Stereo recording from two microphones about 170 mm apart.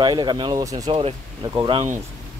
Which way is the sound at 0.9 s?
30° right (ahead or behind).